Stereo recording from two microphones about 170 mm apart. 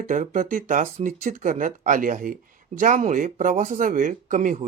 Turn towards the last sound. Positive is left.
turn(degrees=-50)  # may be behind; listen again after turning